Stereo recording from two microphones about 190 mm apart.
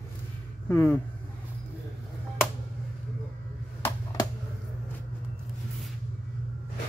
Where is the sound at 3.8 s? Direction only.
20° left (ahead or behind).